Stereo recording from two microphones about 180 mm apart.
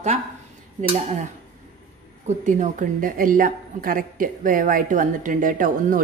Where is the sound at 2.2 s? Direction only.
45° right (ahead or behind).